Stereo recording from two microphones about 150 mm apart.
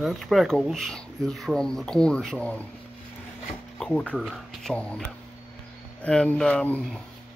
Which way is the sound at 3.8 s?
10° left (ahead or behind).